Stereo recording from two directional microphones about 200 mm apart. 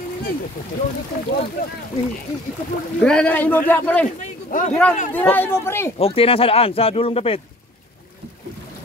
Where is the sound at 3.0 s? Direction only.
5° left (ahead or behind).